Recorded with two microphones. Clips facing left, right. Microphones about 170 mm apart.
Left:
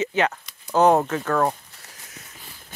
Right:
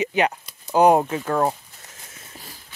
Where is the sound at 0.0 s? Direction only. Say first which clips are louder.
Right 1 dB; 15° right (ahead or behind).